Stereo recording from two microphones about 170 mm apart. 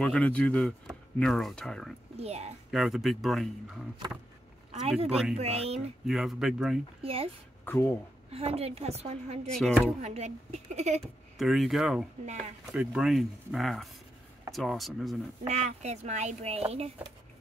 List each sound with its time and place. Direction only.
0.0 s speech: 5° left (ahead or behind)
2.1 s speech: 40° right (ahead or behind)
2.7 s speech: centre (ahead or behind)
4.9 s speech: 5° right (ahead or behind)
5.4 s speech: 40° right (ahead or behind)
6.0 s speech: centre (ahead or behind)
7.0 s speech: 35° right (ahead or behind)
7.6 s speech: 10° left (ahead or behind)
8.3 s speech: 35° right (ahead or behind)
9.6 s speech: centre (ahead or behind)
10.0 s speech: 40° right (ahead or behind)
11.3 s speech: centre (ahead or behind)
15.4 s speech: 40° right (ahead or behind)